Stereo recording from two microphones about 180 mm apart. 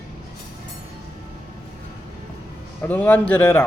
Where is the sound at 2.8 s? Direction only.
10° left (ahead or behind).